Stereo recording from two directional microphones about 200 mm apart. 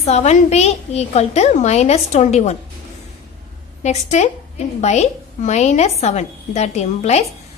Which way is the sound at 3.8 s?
35° left (ahead or behind).